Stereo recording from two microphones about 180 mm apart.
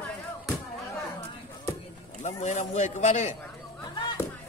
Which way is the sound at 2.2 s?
40° left (ahead or behind).